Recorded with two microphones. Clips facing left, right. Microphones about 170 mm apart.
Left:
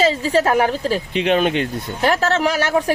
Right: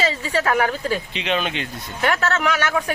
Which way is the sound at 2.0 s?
30° left (ahead or behind).